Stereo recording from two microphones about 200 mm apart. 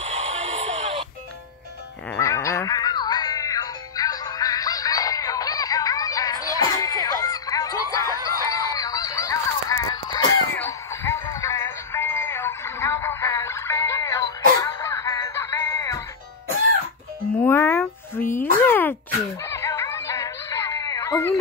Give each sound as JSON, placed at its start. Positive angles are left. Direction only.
{"t": 0.1, "sound": "radio", "side_deg": -35}
{"t": 2.1, "sound": "music", "side_deg": 15}
{"t": 7.1, "sound": "a sound", "side_deg": 15}
{"t": 14.6, "sound": "music", "side_deg": 15}
{"t": 17.4, "sound": "a sound", "side_deg": 10}
{"t": 19.5, "sound": "music", "side_deg": 15}